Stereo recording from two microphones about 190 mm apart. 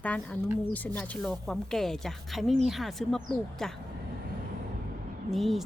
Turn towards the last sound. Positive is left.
turn(degrees=0)  # may be behind; listen again after turning